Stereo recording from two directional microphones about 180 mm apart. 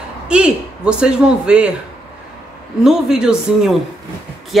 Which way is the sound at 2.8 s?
5° right (ahead or behind).